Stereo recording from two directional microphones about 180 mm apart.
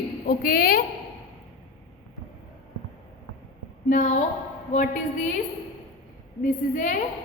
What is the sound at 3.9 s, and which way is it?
Speech, 45° left (ahead or behind).